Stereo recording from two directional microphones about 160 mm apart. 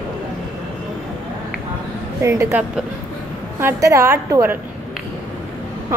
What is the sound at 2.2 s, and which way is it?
A woman's voice, 20° right (ahead or behind).